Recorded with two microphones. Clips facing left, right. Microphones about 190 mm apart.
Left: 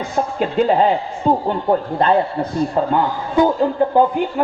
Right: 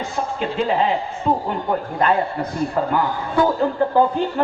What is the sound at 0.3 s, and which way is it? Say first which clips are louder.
Speech: left 5 dB; 40° left (ahead or behind).